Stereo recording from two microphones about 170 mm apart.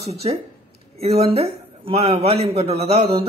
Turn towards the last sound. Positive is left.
turn(degrees=-35)  # may be behind; listen again after turning